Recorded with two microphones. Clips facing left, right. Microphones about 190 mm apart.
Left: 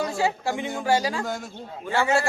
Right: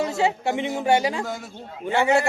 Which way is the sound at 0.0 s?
25° right (ahead or behind).